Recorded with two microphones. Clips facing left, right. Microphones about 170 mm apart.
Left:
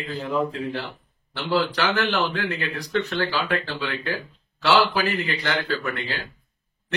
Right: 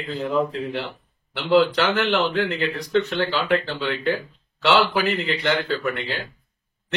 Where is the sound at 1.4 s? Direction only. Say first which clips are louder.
Right 5 dB; 25° right (ahead or behind).